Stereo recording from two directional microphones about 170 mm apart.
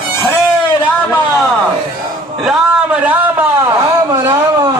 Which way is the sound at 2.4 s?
5° right (ahead or behind).